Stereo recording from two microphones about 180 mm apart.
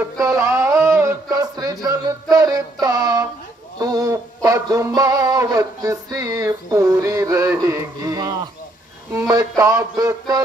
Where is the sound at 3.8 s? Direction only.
20° right (ahead or behind).